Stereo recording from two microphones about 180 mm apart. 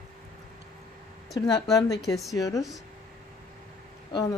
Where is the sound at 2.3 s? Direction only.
20° left (ahead or behind).